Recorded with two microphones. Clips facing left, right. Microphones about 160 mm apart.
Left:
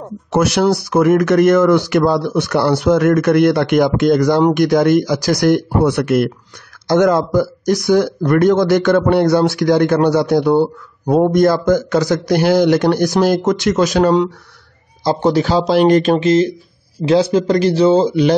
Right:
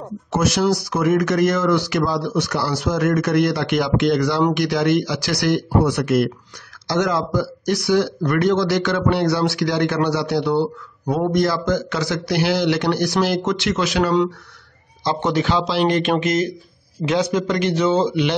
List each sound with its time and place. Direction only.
0.3 s speech: 65° left (ahead or behind); by 18.3 s 40° left (ahead or behind)